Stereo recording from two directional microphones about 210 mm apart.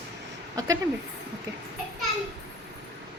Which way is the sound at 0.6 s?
15° right (ahead or behind).